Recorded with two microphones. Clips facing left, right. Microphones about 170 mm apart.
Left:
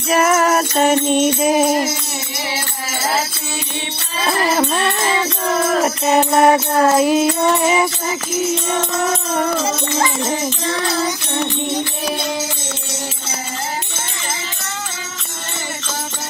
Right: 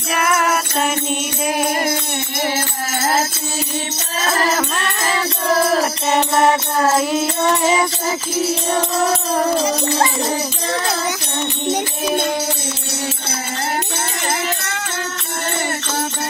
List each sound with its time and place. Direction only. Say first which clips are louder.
0.1 s music: left 4 dB; 30° left (ahead or behind)
6.0 s music: left 3 dB; 25° left (ahead or behind)
8.4 s music: even; 35° right (ahead or behind)